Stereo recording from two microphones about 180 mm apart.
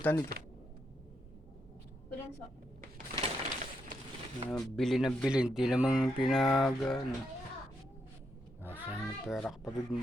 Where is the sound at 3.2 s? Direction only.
35° right (ahead or behind).